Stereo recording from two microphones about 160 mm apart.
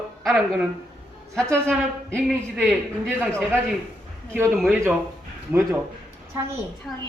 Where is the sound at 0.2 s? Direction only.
Centre (ahead or behind).